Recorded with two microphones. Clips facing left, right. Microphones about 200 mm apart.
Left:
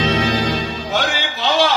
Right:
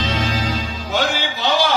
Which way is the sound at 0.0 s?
60° left (ahead or behind).